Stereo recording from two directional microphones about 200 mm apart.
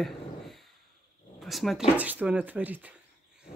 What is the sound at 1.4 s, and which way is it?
Speech, centre (ahead or behind).